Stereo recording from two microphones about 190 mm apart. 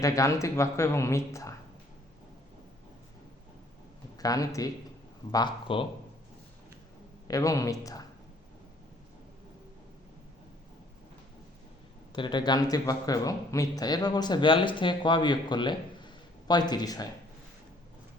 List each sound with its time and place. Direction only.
0.0 s speech: 15° left (ahead or behind)
4.2 s speech: 20° left (ahead or behind)
7.3 s speech: 15° left (ahead or behind)
12.1 s speech: 25° left (ahead or behind)